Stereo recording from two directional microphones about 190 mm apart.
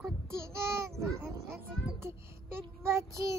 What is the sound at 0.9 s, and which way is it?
Child singing, 15° right (ahead or behind).